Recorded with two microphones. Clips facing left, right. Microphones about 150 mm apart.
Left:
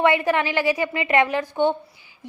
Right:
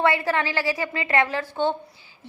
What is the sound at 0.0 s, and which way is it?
A woman's voice, 20° left (ahead or behind).